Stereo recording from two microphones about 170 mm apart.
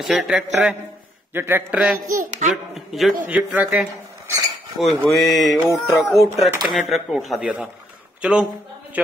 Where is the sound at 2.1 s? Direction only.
50° right (ahead or behind).